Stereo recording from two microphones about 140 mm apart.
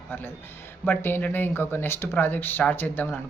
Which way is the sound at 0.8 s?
15° left (ahead or behind).